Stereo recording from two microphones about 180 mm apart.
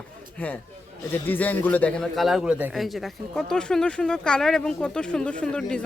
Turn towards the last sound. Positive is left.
turn(degrees=5)  # may be behind; listen again after turning